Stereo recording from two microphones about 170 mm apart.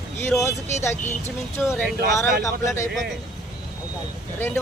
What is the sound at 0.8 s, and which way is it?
Speech, 15° left (ahead or behind).